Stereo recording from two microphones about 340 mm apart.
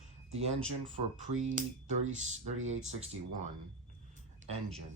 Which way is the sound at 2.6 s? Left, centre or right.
Centre.